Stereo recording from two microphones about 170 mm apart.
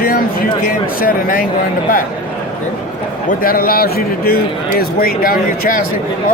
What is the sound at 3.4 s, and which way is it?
Speech, 60° left (ahead or behind).